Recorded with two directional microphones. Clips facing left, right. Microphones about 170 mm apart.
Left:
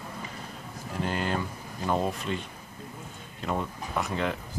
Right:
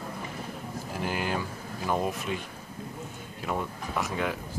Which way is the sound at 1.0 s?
10° right (ahead or behind).